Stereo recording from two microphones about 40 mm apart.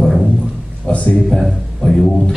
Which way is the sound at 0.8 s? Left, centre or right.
Left.